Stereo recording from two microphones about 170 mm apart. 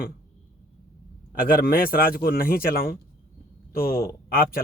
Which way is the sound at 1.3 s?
60° left (ahead or behind).